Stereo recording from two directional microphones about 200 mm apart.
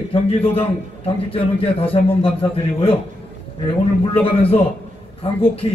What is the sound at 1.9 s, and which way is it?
A man's voice, 25° left (ahead or behind).